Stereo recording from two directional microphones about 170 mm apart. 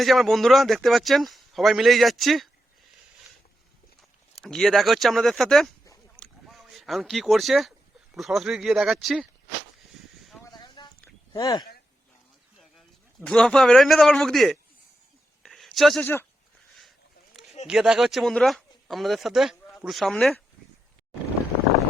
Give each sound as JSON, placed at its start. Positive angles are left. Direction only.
{"t": 0.0, "sound": "speech", "side_deg": 0}
{"t": 4.4, "sound": "speech", "side_deg": 5}
{"t": 6.1, "sound": "a sound", "side_deg": 0}
{"t": 8.1, "sound": "speech", "side_deg": 0}
{"t": 10.4, "sound": "a sound", "side_deg": 25}
{"t": 11.3, "sound": "speech", "side_deg": 20}
{"t": 12.5, "sound": "speech", "side_deg": 0}
{"t": 15.4, "sound": "a sound", "side_deg": 0}
{"t": 17.7, "sound": "speech", "side_deg": -5}